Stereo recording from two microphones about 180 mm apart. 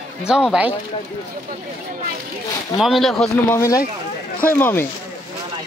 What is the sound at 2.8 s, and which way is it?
Speech, centre (ahead or behind).